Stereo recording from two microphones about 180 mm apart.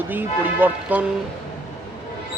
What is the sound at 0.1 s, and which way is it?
Speech, 10° right (ahead or behind).